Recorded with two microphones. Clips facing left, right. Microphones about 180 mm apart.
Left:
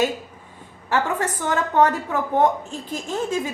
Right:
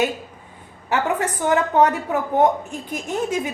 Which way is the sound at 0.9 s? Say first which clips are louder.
Right 1 dB; 20° right (ahead or behind).